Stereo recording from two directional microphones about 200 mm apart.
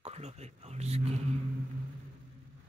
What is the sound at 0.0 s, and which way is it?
Speech, 30° right (ahead or behind).